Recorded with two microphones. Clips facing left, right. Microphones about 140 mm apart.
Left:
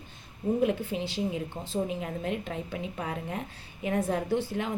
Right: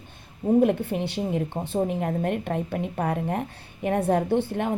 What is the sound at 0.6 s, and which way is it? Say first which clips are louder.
A woman's voice: right 5 dB; 60° right (ahead or behind).